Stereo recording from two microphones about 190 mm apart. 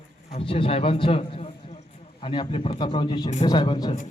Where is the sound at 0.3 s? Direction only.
30° left (ahead or behind).